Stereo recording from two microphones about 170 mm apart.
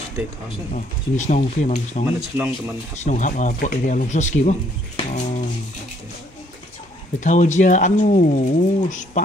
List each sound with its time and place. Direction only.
0.7 s speech: 45° left (ahead or behind)
2.3 s speech: 15° right (ahead or behind)
3.0 s speech: 45° left (ahead or behind)
7.2 s speech: 45° left (ahead or behind)